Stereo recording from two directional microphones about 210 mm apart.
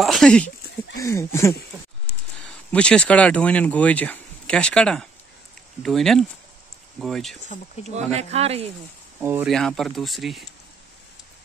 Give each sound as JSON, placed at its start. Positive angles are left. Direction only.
{"t": 0.0, "sound": "a sound", "side_deg": 0}
{"t": 0.9, "sound": "speech", "side_deg": 15}
{"t": 7.4, "sound": "speech", "side_deg": 35}
{"t": 7.9, "sound": "speech", "side_deg": -30}
{"t": 9.2, "sound": "speech", "side_deg": -10}
{"t": 9.5, "sound": "speech", "side_deg": 0}